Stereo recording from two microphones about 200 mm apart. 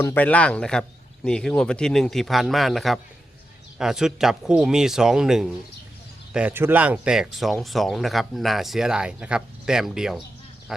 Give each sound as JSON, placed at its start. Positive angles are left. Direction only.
{"t": 0.0, "sound": "speech", "side_deg": 10}